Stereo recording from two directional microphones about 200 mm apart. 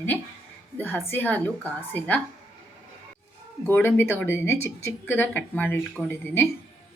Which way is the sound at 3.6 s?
10° left (ahead or behind).